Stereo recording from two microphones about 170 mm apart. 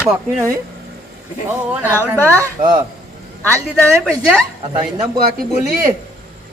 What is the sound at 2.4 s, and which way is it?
Speech, 25° right (ahead or behind).